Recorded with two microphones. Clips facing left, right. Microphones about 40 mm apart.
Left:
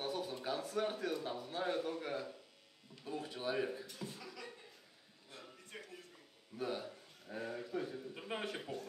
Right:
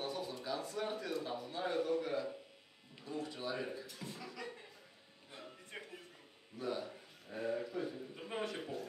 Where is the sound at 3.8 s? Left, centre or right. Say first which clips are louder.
Even; centre.